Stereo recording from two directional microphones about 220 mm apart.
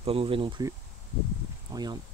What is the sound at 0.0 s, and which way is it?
Speech, 25° right (ahead or behind).